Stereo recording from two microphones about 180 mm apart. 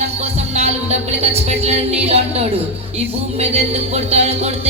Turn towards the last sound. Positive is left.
turn(degrees=-35)  # may be behind; listen again after turning